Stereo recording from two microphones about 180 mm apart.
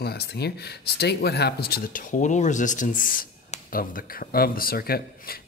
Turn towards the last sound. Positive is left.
turn(degrees=55)  # may be behind; listen again after turning